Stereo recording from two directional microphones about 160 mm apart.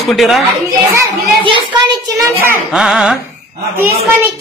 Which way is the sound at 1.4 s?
30° right (ahead or behind).